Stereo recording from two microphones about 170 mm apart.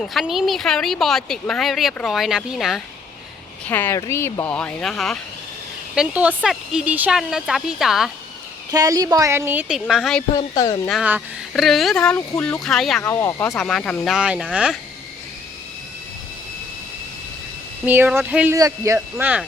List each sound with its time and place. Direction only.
0.0 s a woman's voice: centre (ahead or behind)
3.7 s a woman's voice: 10° left (ahead or behind)
8.7 s speech: 20° right (ahead or behind); by 10.2 s centre (ahead or behind)
10.3 s speech: 20° left (ahead or behind)
11.0 s a woman's voice: 5° right (ahead or behind)
13.0 s speech: 15° left (ahead or behind)
13.6 s a woman's voice: 5° left (ahead or behind)
17.8 s speech: 10° right (ahead or behind)
18.9 s speech: 10° right (ahead or behind)